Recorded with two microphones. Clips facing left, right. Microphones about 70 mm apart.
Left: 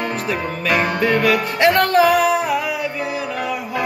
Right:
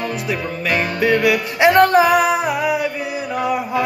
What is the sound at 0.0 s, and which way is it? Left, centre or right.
Music, left.